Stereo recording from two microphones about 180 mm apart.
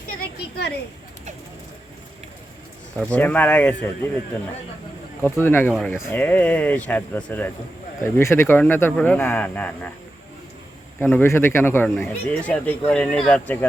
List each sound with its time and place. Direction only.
0.1 s a sound: 60° left (ahead or behind)
3.1 s speech: 10° left (ahead or behind)
5.4 s speech: 10° left (ahead or behind)
11.0 s speech: 15° left (ahead or behind)